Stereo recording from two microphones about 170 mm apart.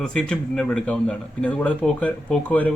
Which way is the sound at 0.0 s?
5° left (ahead or behind).